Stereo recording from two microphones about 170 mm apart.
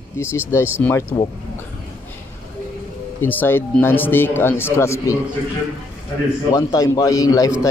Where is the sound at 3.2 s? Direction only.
10° left (ahead or behind).